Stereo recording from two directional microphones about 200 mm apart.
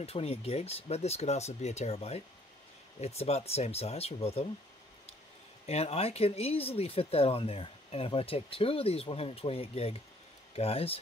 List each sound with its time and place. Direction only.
0.0 s speech: 30° left (ahead or behind)
5.7 s speech: 30° left (ahead or behind)